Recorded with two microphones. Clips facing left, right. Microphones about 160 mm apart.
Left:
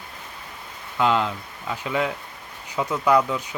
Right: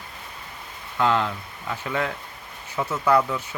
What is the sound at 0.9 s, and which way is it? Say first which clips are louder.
Speech: left 1 dB; 15° left (ahead or behind).